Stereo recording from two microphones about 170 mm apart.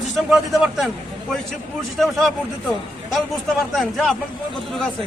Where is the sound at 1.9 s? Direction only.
Centre (ahead or behind).